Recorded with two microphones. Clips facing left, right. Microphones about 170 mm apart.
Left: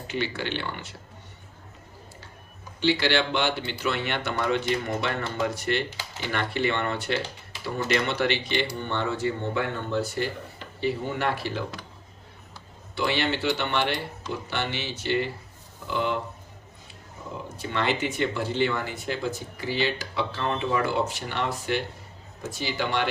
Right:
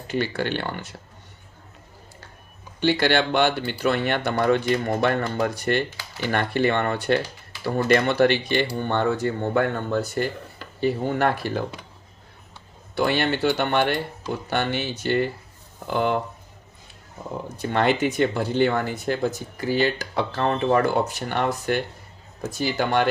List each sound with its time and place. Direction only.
0.1 s speech: 45° right (ahead or behind)
2.8 s speech: 50° right (ahead or behind)
13.0 s speech: 50° right (ahead or behind)
17.6 s speech: 50° right (ahead or behind)